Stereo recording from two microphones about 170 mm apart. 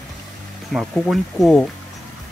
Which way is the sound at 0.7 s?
5° right (ahead or behind).